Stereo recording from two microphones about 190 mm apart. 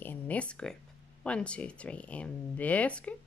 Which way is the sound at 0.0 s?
10° left (ahead or behind).